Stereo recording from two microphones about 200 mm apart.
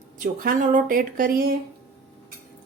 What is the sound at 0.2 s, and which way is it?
Speech, 45° right (ahead or behind).